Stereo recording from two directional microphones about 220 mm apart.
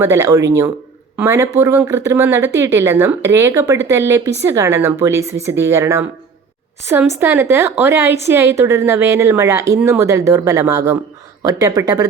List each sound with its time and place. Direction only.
0.0 s a woman's voice: 10° right (ahead or behind)